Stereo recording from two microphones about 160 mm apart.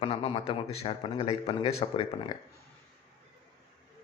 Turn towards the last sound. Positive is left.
turn(degrees=35)  # may be behind; listen again after turning